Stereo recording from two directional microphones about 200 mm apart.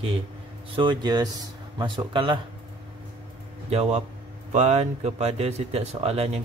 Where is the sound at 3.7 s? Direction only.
30° right (ahead or behind).